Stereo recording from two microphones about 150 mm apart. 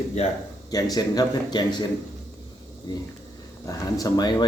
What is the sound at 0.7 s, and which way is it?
Speech, 25° left (ahead or behind).